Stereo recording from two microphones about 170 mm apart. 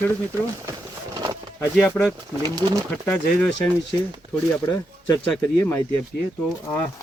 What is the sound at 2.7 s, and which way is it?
Speech, 5° left (ahead or behind).